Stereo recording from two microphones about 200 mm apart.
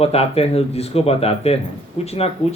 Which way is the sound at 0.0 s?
30° left (ahead or behind).